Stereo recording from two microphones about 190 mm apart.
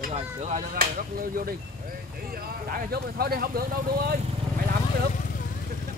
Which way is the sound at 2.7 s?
50° right (ahead or behind).